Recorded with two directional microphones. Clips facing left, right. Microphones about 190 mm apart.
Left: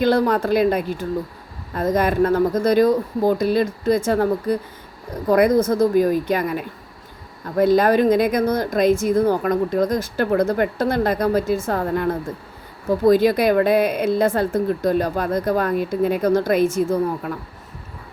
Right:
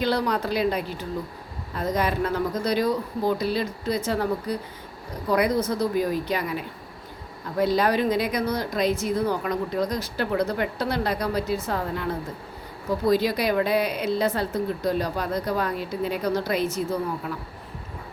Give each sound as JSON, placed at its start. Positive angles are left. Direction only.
{"t": 0.0, "sound": "speech", "side_deg": 50}